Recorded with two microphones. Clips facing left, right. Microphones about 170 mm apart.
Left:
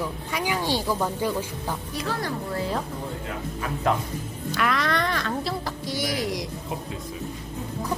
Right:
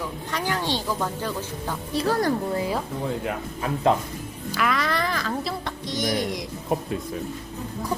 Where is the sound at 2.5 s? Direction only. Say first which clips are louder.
Right 2 dB; 15° right (ahead or behind).